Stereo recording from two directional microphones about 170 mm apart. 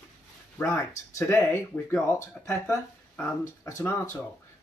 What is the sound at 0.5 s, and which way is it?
Speech, 10° left (ahead or behind).